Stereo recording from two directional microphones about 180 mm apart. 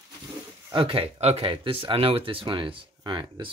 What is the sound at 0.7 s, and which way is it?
Speech, 30° right (ahead or behind).